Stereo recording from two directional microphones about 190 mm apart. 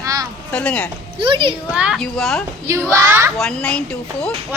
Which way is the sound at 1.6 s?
5° right (ahead or behind).